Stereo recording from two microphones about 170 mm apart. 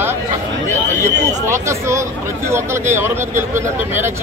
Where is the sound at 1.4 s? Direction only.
15° right (ahead or behind).